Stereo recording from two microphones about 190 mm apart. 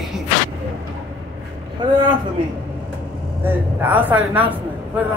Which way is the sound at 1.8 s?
25° right (ahead or behind).